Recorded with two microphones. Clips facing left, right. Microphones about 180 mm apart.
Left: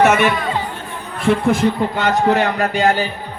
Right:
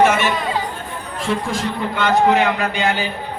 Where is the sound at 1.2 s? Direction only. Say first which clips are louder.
Left 7 dB; 60° left (ahead or behind).